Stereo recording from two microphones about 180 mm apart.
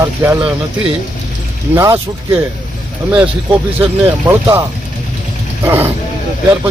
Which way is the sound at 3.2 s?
30° right (ahead or behind).